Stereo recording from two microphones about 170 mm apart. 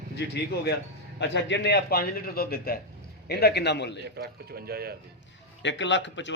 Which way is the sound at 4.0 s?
70° right (ahead or behind).